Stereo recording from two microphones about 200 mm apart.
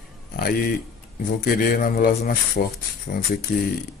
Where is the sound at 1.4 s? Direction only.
50° left (ahead or behind).